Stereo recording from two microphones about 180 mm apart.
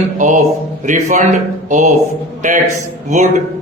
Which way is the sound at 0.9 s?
45° right (ahead or behind).